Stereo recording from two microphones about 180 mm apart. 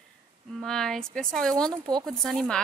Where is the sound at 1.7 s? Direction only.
20° right (ahead or behind).